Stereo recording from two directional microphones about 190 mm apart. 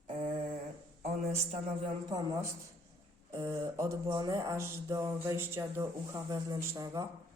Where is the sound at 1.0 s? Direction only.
35° right (ahead or behind).